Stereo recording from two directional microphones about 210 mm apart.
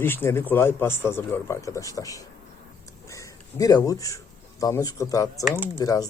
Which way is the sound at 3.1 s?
15° left (ahead or behind).